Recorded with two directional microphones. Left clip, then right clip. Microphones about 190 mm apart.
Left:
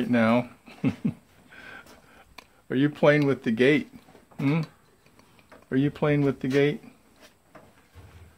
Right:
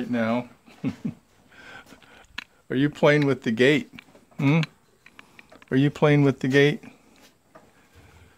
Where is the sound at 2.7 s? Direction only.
30° right (ahead or behind).